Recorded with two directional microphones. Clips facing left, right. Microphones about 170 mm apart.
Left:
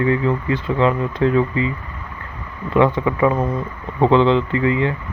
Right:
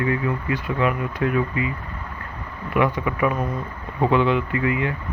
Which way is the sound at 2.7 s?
25° left (ahead or behind).